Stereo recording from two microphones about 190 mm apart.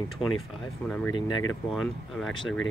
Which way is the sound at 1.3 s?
90° left.